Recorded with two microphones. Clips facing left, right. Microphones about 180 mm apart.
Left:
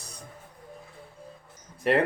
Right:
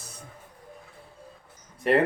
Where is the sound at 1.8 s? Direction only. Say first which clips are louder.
Right 1 dB; centre (ahead or behind).